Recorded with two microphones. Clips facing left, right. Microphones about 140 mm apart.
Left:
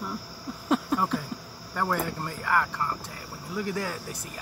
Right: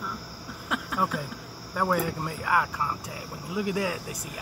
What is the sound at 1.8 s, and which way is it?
Speech, 5° right (ahead or behind).